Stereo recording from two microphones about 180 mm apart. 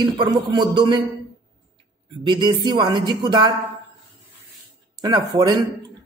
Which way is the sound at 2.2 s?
25° right (ahead or behind).